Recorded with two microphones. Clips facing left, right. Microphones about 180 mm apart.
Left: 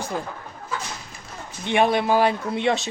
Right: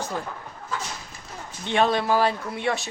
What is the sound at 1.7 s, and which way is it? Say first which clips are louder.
Speech: left 2 dB; 15° left (ahead or behind).